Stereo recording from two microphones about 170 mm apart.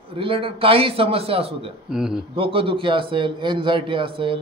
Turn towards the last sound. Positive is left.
turn(degrees=-30)  # may be behind; listen again after turning